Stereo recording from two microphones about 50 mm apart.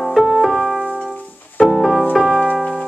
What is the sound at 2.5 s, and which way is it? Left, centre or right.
Keyboard, left.